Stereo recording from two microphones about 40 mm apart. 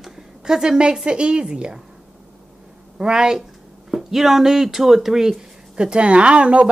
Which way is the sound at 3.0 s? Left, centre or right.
Centre.